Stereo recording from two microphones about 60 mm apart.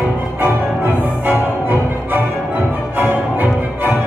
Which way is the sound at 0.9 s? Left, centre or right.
Right.